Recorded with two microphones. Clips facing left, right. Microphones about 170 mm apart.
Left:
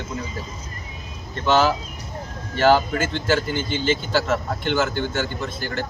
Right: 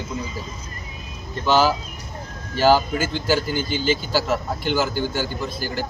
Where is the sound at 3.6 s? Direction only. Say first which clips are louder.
Right 1 dB; 25° left (ahead or behind).